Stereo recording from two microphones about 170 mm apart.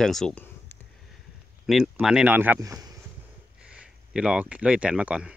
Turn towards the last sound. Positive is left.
turn(degrees=-5)  # may be behind; listen again after turning